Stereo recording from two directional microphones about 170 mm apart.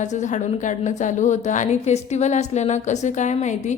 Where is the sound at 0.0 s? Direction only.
45° left (ahead or behind).